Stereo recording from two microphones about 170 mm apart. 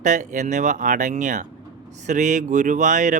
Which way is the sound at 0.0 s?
45° right (ahead or behind).